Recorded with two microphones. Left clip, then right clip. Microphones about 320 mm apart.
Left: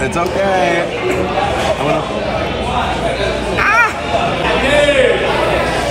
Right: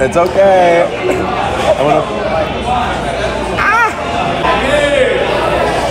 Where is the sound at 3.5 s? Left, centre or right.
Centre.